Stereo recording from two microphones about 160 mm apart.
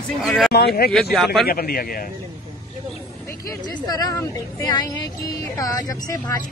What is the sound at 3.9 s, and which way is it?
Speech, 25° left (ahead or behind).